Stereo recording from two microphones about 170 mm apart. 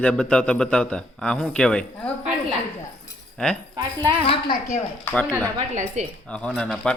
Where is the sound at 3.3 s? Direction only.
5° left (ahead or behind).